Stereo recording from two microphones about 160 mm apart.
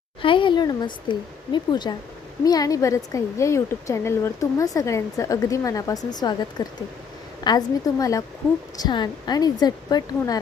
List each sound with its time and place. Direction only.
0.2 s a woman's voice: 30° left (ahead or behind)